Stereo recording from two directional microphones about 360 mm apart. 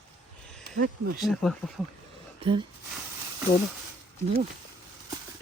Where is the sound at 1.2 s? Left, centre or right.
Centre.